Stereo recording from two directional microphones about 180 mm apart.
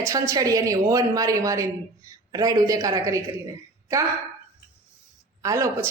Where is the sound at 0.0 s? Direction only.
20° right (ahead or behind).